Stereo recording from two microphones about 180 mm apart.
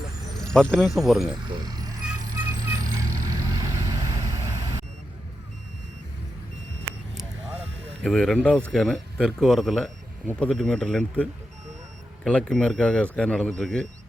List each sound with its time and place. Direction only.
0.3 s speech: 5° left (ahead or behind)
1.3 s speech: 20° right (ahead or behind)
2.3 s vehicle: 20° right (ahead or behind)
8.0 s speech: 5° left (ahead or behind)